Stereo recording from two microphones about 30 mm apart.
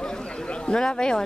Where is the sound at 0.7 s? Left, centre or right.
Left.